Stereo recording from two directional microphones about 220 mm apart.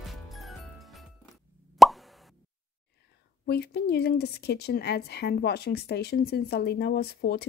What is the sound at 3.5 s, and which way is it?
A woman's voice, 45° left (ahead or behind).